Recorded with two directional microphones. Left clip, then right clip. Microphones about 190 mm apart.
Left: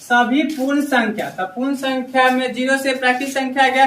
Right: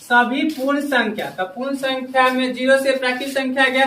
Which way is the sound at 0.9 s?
20° left (ahead or behind).